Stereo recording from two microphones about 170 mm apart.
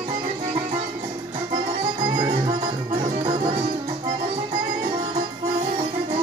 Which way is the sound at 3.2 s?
30° right (ahead or behind).